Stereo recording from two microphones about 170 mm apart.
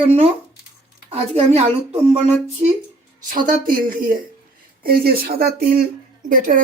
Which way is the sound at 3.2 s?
55° right (ahead or behind).